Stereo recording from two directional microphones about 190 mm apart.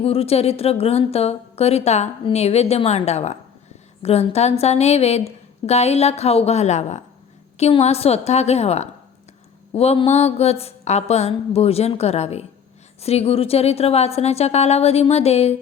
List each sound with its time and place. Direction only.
0.0 s a woman's voice: 30° left (ahead or behind)